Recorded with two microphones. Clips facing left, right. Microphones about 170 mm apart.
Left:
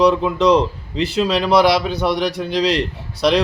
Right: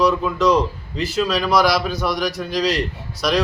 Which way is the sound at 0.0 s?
25° left (ahead or behind).